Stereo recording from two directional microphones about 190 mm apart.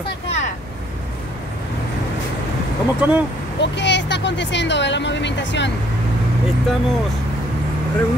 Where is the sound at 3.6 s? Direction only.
65° left (ahead or behind).